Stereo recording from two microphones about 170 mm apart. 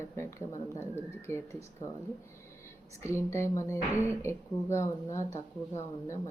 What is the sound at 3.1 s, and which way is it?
Speech, 15° left (ahead or behind).